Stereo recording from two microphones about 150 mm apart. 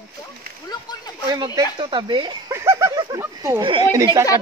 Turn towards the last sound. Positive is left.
turn(degrees=-20)  # may be behind; listen again after turning